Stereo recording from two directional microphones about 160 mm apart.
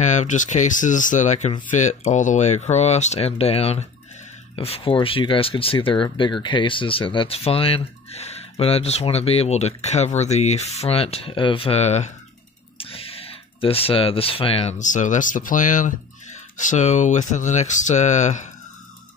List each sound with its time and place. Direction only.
0.0 s speech: 50° left (ahead or behind)